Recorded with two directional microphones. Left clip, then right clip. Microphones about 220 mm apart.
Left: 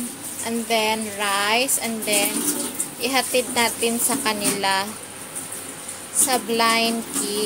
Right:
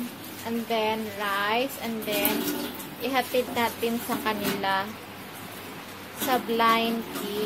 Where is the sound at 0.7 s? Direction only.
30° left (ahead or behind).